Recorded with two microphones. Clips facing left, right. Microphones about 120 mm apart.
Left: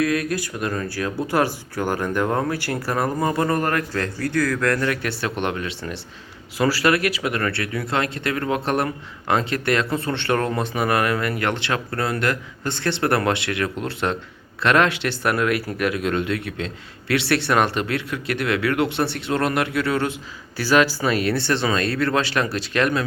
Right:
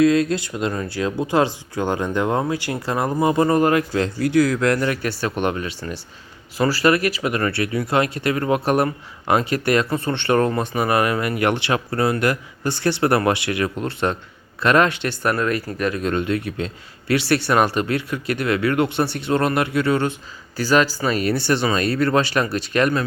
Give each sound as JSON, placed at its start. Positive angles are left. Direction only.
{"t": 0.0, "sound": "speech", "side_deg": -25}
{"t": 4.9, "sound": "speech", "side_deg": 0}